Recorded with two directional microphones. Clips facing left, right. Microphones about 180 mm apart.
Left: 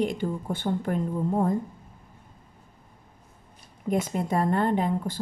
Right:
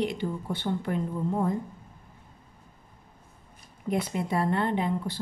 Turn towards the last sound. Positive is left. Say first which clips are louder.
# left 2 dB
turn(degrees=45)  # may be behind; listen again after turning